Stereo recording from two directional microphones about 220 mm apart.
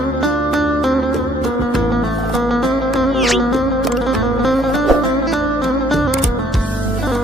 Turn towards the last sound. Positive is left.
turn(degrees=0)  # may be behind; listen again after turning